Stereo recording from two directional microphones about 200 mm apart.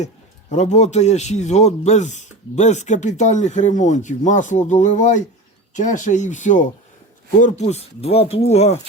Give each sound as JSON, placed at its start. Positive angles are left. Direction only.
{"t": 0.5, "sound": "a man's voice", "side_deg": 35}